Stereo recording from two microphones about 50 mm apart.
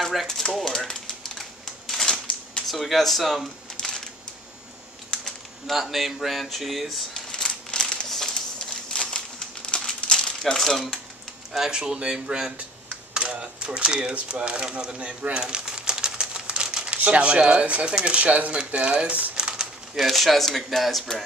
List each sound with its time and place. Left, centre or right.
0.0 s typewriter: centre
0.3 s speech: centre
0.7 s typewriter: centre
2.7 s speech: centre
3.7 s a sound: centre
5.7 s speech: centre
7.2 s a sound: centre
8.6 s crumpling: centre
10.1 s speech: centre
11.5 s speech: centre
13.1 s a sound: centre
17.0 s speech: right
19.3 s a sound: centre
20.0 s speech: centre